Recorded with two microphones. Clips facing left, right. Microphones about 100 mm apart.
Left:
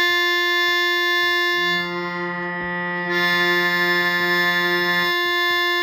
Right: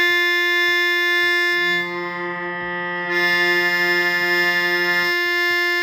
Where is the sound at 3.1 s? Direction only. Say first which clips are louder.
Even; 15° left (ahead or behind).